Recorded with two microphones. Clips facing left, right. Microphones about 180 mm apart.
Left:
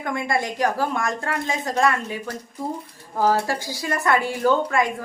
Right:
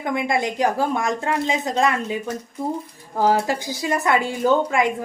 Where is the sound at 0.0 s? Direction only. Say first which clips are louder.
Right 2 dB; 20° right (ahead or behind).